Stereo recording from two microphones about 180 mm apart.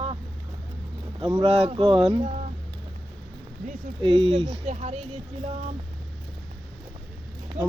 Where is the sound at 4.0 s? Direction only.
25° right (ahead or behind).